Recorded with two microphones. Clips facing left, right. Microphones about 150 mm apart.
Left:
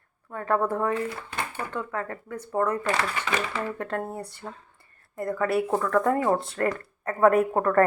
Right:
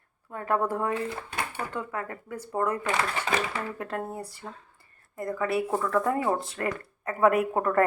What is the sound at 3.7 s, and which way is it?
Speech, 5° right (ahead or behind).